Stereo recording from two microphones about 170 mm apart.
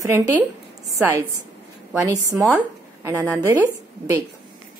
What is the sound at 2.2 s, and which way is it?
A woman's voice, 15° right (ahead or behind).